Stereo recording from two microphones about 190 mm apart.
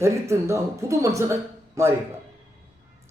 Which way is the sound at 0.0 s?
15° right (ahead or behind).